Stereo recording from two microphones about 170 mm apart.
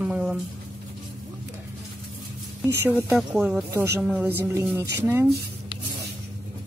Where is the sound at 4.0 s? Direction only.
5° right (ahead or behind).